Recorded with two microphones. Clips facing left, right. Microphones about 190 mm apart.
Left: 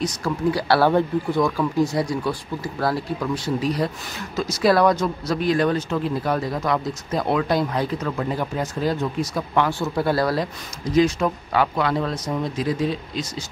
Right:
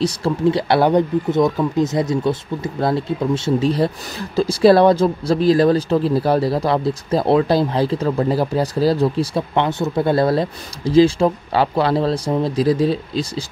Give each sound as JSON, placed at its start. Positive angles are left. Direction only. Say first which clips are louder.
{"t": 0.0, "sound": "speech", "louder": "right 5 dB", "side_deg": -25}